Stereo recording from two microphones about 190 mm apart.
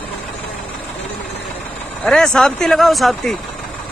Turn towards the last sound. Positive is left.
turn(degrees=0)  # may be behind; listen again after turning